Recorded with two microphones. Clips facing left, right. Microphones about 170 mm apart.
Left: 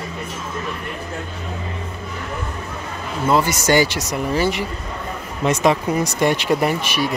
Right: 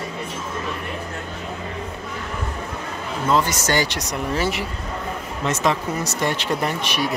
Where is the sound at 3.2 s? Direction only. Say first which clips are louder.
Left 3 dB; 10° left (ahead or behind).